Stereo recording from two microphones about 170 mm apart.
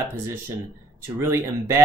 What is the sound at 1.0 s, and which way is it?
Speech, 15° right (ahead or behind).